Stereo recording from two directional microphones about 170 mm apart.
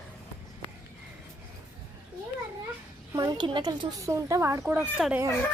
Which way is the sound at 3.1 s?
20° right (ahead or behind).